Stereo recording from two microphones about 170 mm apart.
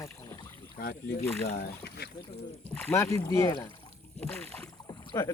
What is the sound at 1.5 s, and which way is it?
Speech, 70° left (ahead or behind).